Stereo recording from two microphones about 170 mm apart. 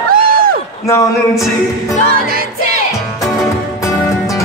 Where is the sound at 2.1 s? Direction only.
60° right (ahead or behind).